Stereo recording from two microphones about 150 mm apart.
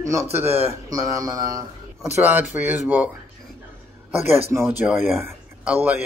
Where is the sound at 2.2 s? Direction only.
10° right (ahead or behind).